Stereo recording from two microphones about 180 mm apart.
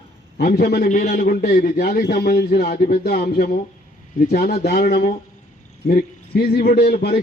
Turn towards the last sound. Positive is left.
turn(degrees=60)  # may be behind; listen again after turning